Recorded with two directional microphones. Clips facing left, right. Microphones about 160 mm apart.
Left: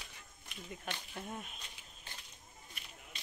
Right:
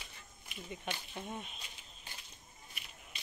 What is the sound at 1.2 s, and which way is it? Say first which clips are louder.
Speech: right 1 dB; 5° left (ahead or behind).